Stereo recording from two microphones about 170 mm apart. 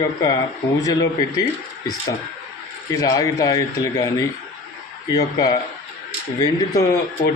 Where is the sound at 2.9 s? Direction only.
20° left (ahead or behind).